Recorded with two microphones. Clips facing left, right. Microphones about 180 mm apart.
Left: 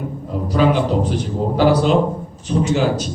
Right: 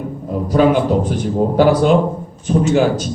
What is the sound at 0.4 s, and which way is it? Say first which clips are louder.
A man's voice: right 3 dB; 50° right (ahead or behind).